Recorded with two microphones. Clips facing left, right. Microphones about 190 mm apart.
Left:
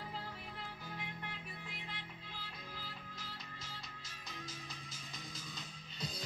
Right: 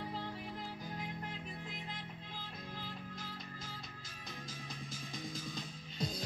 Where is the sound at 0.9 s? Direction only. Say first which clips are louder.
Right 4 dB; 40° right (ahead or behind).